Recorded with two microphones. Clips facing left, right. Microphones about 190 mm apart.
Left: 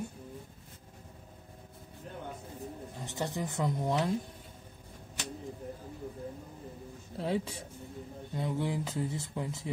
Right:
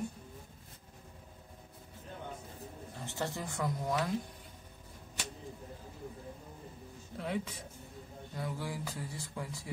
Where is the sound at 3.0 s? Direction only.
20° left (ahead or behind).